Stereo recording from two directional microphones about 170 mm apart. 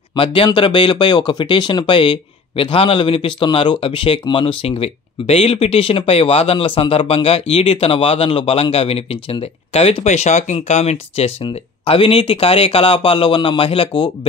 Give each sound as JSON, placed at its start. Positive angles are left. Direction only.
{"t": 0.1, "sound": "speech", "side_deg": 30}